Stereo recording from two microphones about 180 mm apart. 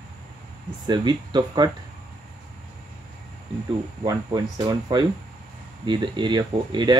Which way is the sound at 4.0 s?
20° right (ahead or behind).